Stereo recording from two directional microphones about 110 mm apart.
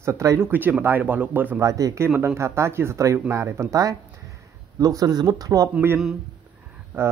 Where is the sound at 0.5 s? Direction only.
15° right (ahead or behind).